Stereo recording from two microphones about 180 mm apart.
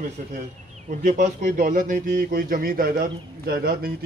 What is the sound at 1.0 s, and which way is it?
Speech, 45° right (ahead or behind).